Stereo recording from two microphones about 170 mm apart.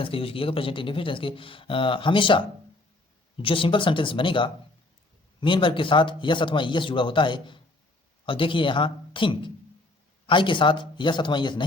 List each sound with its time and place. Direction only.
0.0 s a man's voice: 35° left (ahead or behind)